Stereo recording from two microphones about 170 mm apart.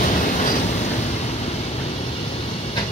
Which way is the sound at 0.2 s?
50° left (ahead or behind).